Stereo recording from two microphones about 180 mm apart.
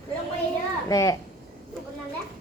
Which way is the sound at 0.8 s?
20° left (ahead or behind).